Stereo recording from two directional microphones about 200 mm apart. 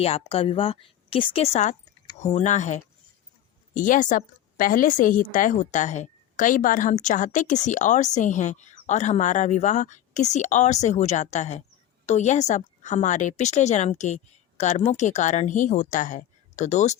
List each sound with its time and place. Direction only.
0.0 s a woman's voice: 30° left (ahead or behind)